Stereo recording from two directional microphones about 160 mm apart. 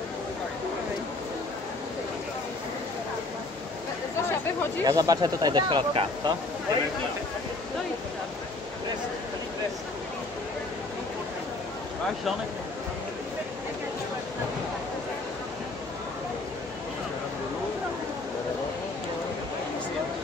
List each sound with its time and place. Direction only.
4.8 s speech: 25° right (ahead or behind)